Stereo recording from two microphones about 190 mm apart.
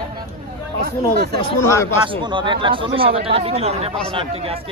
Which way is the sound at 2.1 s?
25° right (ahead or behind).